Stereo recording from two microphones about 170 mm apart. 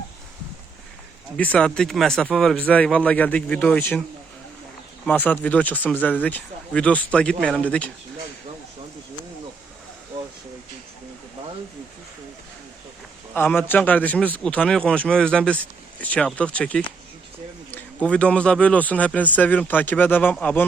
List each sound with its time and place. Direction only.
1.4 s a man's voice: 5° left (ahead or behind)
5.0 s a man's voice: 10° left (ahead or behind)
13.3 s a man's voice: 10° left (ahead or behind)